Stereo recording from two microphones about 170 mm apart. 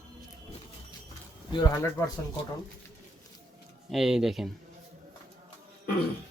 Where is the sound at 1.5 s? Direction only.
20° left (ahead or behind).